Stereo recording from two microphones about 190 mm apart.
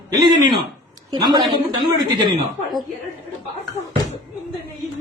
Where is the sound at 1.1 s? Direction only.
25° right (ahead or behind).